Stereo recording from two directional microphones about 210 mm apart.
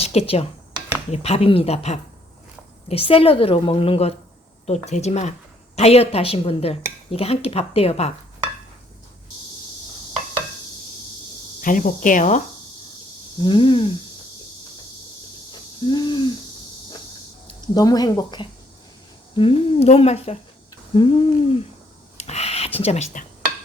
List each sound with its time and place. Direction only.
0.0 s a woman's voice: 30° left (ahead or behind)
11.6 s speech: 40° left (ahead or behind)
13.4 s a woman's voice: 25° left (ahead or behind)
15.8 s a woman's voice: 20° left (ahead or behind)
17.7 s a woman's voice: 20° left (ahead or behind)
22.2 s a sound: 30° left (ahead or behind)